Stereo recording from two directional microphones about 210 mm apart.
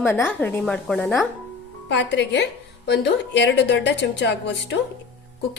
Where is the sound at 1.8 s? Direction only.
55° left (ahead or behind).